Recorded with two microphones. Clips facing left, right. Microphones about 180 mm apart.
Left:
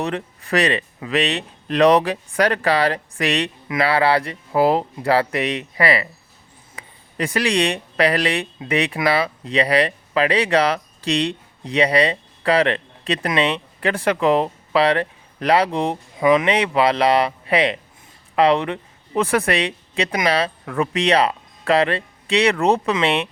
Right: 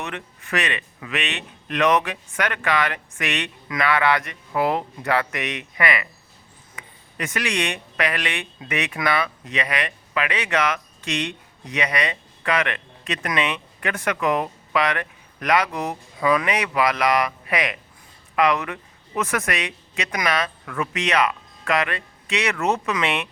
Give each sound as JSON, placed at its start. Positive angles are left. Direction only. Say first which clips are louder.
{"t": 0.0, "sound": "speech", "louder": "left 8 dB", "side_deg": 35}